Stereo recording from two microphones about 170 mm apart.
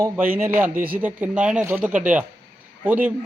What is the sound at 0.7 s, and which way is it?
Speech, 55° right (ahead or behind).